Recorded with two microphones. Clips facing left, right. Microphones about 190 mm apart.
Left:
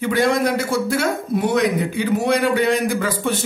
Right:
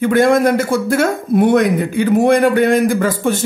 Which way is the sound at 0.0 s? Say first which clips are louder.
Right 6 dB; 50° right (ahead or behind).